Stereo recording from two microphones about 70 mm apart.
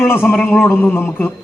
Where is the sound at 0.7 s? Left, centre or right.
Left.